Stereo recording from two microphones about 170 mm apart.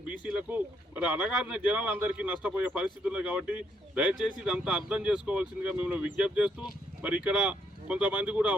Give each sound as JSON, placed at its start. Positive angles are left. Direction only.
{"t": 0.1, "sound": "speech", "side_deg": -5}